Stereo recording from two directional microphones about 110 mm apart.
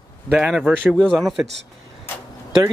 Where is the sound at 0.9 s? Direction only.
5° left (ahead or behind).